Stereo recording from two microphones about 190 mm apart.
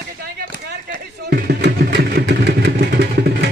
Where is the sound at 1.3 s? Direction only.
60° right (ahead or behind).